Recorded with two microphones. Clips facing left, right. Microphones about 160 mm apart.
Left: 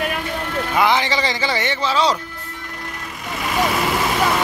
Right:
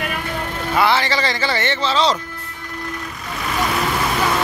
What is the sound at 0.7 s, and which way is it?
Speech, 15° left (ahead or behind).